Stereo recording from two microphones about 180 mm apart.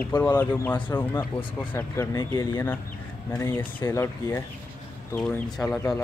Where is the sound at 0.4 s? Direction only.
10° left (ahead or behind).